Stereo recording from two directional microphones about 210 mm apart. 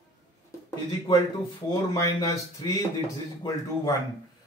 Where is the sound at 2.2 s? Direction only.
15° left (ahead or behind).